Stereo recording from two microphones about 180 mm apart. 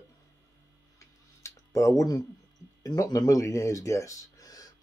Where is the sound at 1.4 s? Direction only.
15° left (ahead or behind).